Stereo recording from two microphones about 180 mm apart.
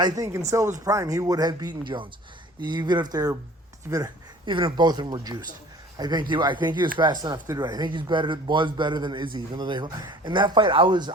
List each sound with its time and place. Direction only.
0.0 s speech: 20° right (ahead or behind)